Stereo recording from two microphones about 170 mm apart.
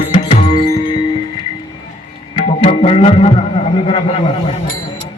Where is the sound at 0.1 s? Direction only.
35° left (ahead or behind).